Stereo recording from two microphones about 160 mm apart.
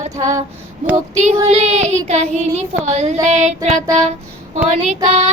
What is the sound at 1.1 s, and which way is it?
Child singing, 45° right (ahead or behind).